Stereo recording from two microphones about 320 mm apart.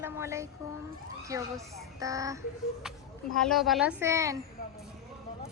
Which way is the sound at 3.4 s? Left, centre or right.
Centre.